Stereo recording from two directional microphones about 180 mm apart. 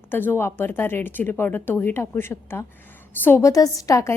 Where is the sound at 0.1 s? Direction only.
10° left (ahead or behind).